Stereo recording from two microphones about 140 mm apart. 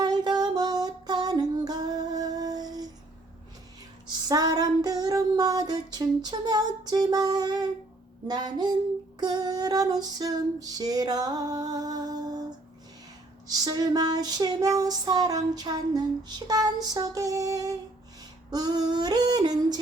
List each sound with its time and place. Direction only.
0.0 s music: 30° right (ahead or behind)
4.0 s female singing: 25° right (ahead or behind)